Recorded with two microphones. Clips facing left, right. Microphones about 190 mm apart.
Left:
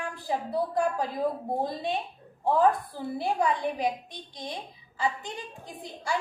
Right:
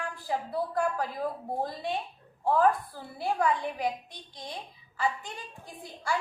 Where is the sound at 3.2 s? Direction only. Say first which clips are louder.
Even; 20° left (ahead or behind).